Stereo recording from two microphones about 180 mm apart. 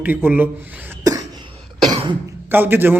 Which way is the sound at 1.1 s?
20° right (ahead or behind).